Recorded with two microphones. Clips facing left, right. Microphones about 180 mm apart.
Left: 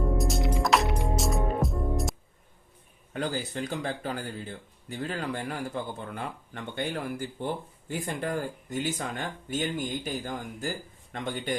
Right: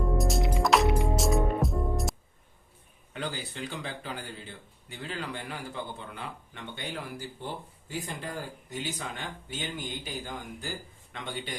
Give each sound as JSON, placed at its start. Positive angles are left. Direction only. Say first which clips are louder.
{"t": 0.0, "sound": "music", "louder": "even", "side_deg": 0}
{"t": 3.1, "sound": "speech", "louder": "left 5 dB", "side_deg": 45}